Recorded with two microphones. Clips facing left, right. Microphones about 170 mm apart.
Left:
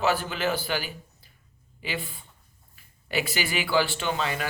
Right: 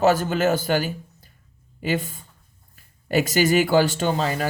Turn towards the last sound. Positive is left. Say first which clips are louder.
# right 6 dB
turn(degrees=-40)  # may be behind; listen again after turning